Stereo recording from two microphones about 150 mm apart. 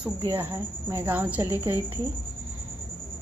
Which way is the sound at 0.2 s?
30° right (ahead or behind).